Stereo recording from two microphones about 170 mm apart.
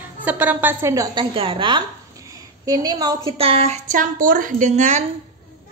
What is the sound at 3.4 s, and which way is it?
A woman's voice, 35° right (ahead or behind).